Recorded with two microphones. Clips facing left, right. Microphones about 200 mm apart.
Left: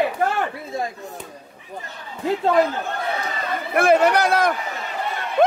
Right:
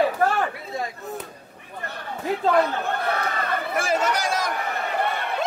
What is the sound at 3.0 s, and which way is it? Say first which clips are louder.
Chatter: right 1 dB; 60° right (ahead or behind).